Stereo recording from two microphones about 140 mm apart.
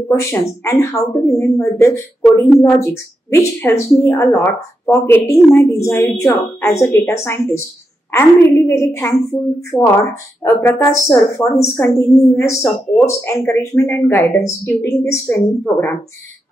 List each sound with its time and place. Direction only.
0.1 s a woman's voice: 20° left (ahead or behind)